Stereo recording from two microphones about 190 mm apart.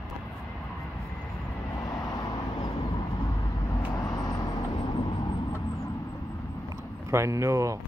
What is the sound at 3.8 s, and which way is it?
Vehicle, 20° left (ahead or behind).